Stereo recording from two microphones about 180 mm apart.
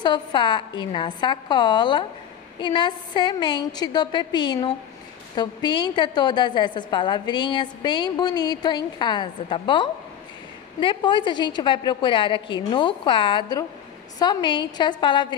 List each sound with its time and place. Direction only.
0.0 s a woman's voice: 25° left (ahead or behind)